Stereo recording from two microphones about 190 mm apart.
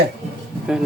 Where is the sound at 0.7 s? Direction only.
5° right (ahead or behind).